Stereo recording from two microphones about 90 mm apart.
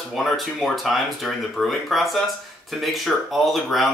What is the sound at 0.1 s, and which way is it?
Speech, centre (ahead or behind).